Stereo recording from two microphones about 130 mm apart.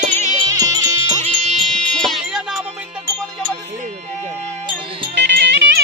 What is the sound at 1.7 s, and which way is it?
Music, 5° left (ahead or behind).